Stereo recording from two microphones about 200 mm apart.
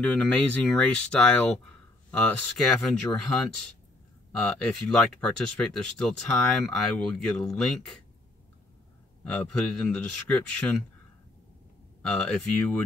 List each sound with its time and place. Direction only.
0.0 s speech: 5° left (ahead or behind)
9.2 s speech: centre (ahead or behind)
12.0 s speech: centre (ahead or behind)